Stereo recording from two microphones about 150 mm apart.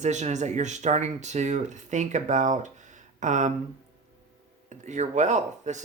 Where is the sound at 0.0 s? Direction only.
50° right (ahead or behind).